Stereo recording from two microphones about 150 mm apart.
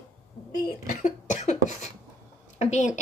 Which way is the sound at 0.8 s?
60° left (ahead or behind).